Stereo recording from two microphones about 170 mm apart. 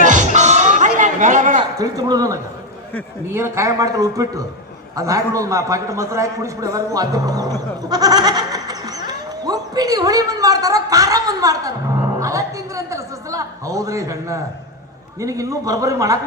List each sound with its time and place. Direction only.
0.0 s music: 45° right (ahead or behind)
0.8 s a sound: 45° right (ahead or behind)
1.8 s a man's voice: 20° right (ahead or behind)